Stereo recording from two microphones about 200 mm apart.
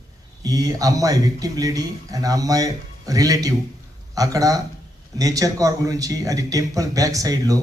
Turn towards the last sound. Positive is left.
turn(degrees=-15)  # may be behind; listen again after turning